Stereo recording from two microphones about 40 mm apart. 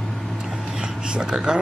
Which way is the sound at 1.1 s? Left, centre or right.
Right.